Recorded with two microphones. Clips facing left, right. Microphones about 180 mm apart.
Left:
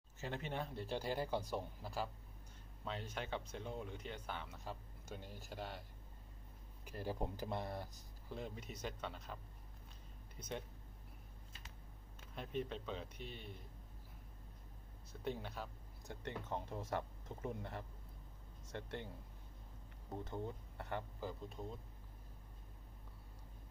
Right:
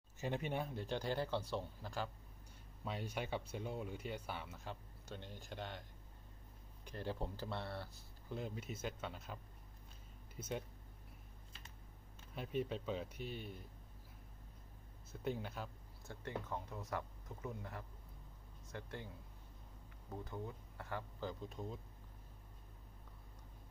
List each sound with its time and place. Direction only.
0.2 s speech: 15° right (ahead or behind)
0.7 s speech: 5° left (ahead or behind)
2.8 s speech: 10° right (ahead or behind)
4.6 s speech: 5° left (ahead or behind)
8.3 s speech: centre (ahead or behind)
12.4 s speech: 5° right (ahead or behind)
15.2 s speech: centre (ahead or behind)
16.1 s speech: 25° left (ahead or behind)
20.1 s speech: 25° left (ahead or behind)
21.2 s speech: centre (ahead or behind)